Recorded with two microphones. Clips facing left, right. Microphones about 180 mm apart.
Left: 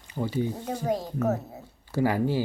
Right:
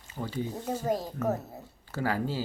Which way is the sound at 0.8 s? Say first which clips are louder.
Left 4 dB; centre (ahead or behind).